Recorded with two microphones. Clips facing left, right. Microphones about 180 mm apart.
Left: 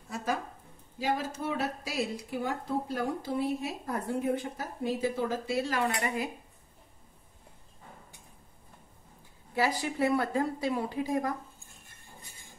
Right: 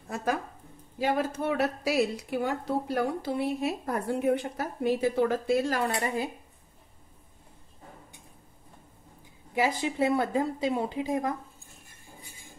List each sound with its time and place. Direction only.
0.1 s a sound: 55° right (ahead or behind)
0.9 s a woman's voice: 60° right (ahead or behind); by 6.3 s 35° right (ahead or behind)
9.6 s speech: 20° right (ahead or behind)